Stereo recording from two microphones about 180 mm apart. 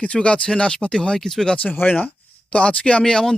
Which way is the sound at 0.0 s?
5° left (ahead or behind).